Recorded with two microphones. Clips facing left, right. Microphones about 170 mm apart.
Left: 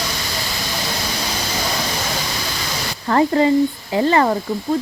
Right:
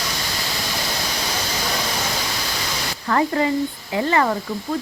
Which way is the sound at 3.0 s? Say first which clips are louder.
Left 4 dB; 30° left (ahead or behind).